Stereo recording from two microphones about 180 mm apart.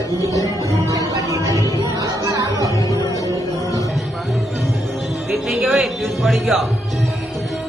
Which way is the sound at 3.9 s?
Centre (ahead or behind).